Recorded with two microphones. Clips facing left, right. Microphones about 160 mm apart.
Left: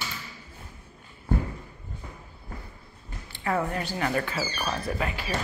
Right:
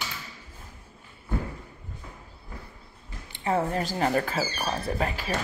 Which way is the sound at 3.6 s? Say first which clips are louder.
Right 3 dB; 35° right (ahead or behind).